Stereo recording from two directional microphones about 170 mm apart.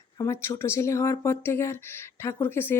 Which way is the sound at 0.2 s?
20° left (ahead or behind).